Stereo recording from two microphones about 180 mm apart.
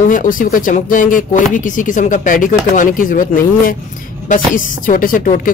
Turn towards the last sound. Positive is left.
turn(degrees=50)  # may be behind; listen again after turning